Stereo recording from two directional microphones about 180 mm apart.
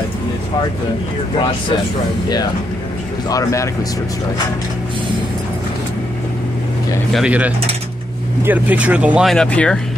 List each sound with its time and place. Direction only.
3.3 s speech: 20° left (ahead or behind)
7.1 s speech: 5° right (ahead or behind)